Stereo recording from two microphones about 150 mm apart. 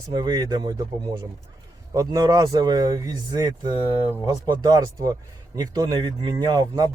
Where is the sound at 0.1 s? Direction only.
25° right (ahead or behind).